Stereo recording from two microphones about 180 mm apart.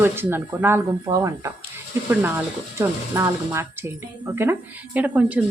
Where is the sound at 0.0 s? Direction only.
10° right (ahead or behind).